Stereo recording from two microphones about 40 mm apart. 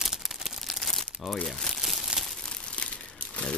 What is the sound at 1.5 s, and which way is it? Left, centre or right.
Speech, centre.